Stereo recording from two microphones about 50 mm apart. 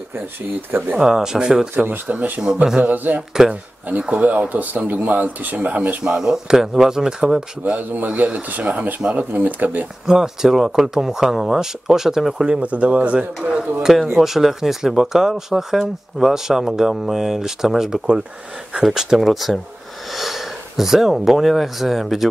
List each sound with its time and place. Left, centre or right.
0.6 s speech: right
0.9 s speech: centre
1.8 s speech: right
2.4 s speech: centre
2.8 s speech: right
4.0 s speech: right
5.8 s speech: right
7.9 s speech: right
10.0 s speech: centre
12.4 s speech: right
14.1 s speech: centre